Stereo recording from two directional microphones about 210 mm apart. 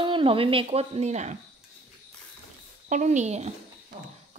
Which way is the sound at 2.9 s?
35° right (ahead or behind).